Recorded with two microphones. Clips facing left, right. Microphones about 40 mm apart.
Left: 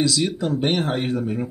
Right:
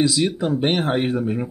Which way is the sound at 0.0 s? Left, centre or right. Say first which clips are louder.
Right 2 dB; centre.